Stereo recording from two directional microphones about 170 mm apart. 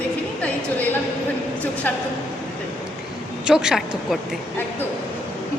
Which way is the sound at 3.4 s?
5° right (ahead or behind).